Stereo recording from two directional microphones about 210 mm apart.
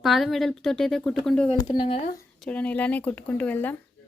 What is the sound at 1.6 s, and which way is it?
Speech, 25° left (ahead or behind).